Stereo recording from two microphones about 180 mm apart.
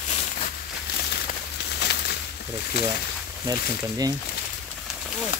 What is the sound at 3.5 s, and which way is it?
Speech, 20° right (ahead or behind).